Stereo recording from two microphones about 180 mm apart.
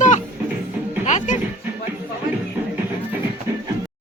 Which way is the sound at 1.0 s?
45° left (ahead or behind).